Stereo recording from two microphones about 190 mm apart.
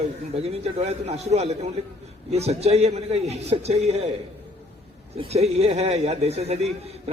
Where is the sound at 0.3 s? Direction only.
35° right (ahead or behind).